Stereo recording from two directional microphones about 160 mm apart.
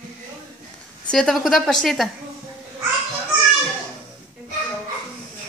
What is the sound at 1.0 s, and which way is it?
A woman's voice, 5° left (ahead or behind).